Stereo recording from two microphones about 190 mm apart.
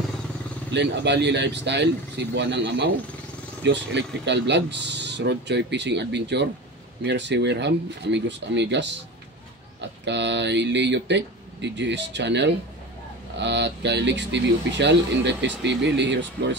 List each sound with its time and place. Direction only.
0.7 s speech: 65° right (ahead or behind)